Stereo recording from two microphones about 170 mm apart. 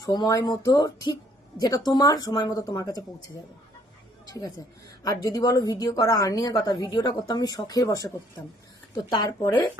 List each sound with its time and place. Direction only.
0.0 s speech: 25° left (ahead or behind)
4.3 s speech: 25° left (ahead or behind)
9.0 s speech: 25° left (ahead or behind)